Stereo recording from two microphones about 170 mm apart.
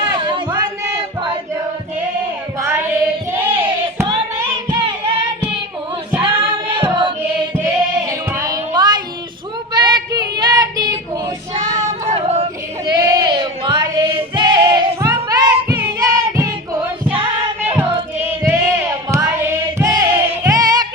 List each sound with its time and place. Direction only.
0.1 s a sound: 30° right (ahead or behind)
2.6 s child singing: 15° right (ahead or behind)
3.3 s a sound: 10° right (ahead or behind)
4.7 s music: 25° right (ahead or behind)
6.2 s singing: 30° right (ahead or behind)
7.6 s music: 15° right (ahead or behind)
9.7 s child singing: 25° right (ahead or behind)
12.0 s a sound: 40° right (ahead or behind)
12.8 s a sound: 25° right (ahead or behind)
14.1 s female singing: 30° right (ahead or behind)
15.1 s music: 20° right (ahead or behind)
18.2 s choir: 15° right (ahead or behind)